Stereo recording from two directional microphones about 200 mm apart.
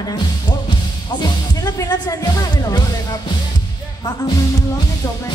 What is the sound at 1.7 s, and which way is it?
Speech, 20° left (ahead or behind).